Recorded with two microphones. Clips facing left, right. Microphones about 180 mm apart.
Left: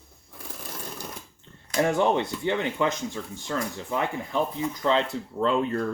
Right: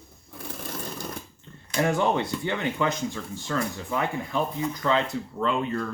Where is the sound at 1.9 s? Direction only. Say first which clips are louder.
Even; 25° left (ahead or behind); by 5.9 s 45° left (ahead or behind).